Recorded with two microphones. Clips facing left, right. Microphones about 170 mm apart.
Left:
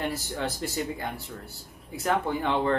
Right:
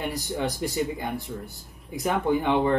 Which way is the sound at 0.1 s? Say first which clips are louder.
Right 3 dB; 15° right (ahead or behind).